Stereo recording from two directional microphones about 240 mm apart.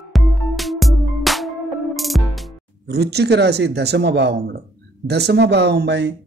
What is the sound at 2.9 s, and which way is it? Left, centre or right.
Speech, right.